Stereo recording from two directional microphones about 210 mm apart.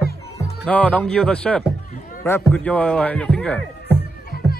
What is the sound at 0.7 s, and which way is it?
Speech, 5° left (ahead or behind).